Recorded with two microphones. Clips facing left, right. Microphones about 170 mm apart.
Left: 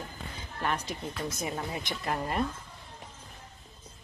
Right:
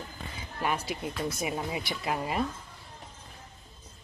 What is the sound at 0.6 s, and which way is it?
Speech, 10° right (ahead or behind).